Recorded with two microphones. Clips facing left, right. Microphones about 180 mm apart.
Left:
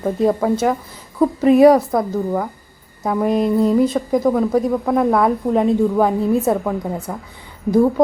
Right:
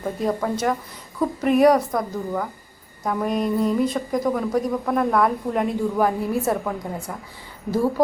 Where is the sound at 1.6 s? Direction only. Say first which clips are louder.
Left 5 dB; 25° left (ahead or behind).